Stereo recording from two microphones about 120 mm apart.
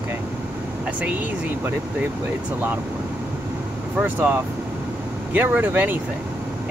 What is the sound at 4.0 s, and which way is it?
Speech, 15° right (ahead or behind).